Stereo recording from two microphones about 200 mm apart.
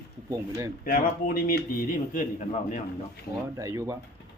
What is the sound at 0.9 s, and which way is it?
A man's voice, 45° left (ahead or behind).